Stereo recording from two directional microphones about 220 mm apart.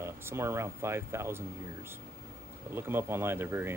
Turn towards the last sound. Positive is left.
turn(degrees=-10)  # may be behind; listen again after turning